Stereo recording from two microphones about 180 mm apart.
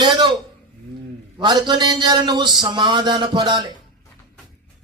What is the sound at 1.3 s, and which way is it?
Speech, 25° right (ahead or behind).